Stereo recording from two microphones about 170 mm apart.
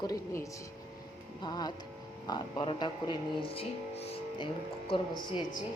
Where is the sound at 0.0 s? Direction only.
20° left (ahead or behind).